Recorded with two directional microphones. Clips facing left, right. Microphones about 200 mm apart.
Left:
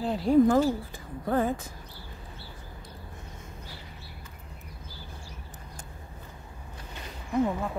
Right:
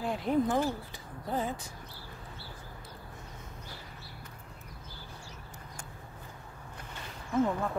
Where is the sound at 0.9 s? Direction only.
55° left (ahead or behind).